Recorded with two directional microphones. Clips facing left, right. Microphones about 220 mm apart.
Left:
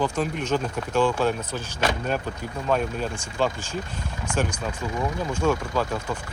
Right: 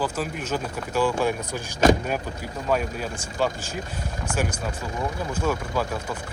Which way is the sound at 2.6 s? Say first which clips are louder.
Left 1 dB; 10° right (ahead or behind).